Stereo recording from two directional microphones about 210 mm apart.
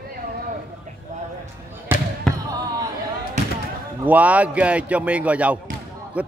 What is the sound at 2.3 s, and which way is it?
Basketball bounce, centre (ahead or behind).